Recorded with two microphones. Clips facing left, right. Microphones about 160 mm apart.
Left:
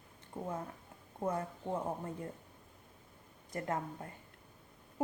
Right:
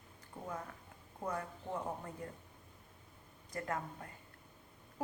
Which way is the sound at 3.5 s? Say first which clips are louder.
Left 3 dB; 25° left (ahead or behind).